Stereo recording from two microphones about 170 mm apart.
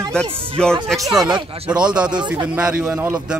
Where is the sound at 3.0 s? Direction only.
15° right (ahead or behind).